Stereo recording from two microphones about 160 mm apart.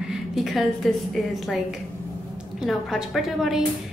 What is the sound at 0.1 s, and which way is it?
A woman's voice, centre (ahead or behind).